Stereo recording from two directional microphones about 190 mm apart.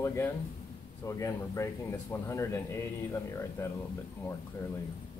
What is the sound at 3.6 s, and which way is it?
Speech, 10° left (ahead or behind).